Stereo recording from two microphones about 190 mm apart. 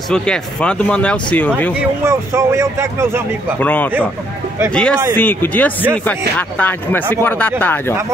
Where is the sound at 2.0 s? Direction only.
15° right (ahead or behind).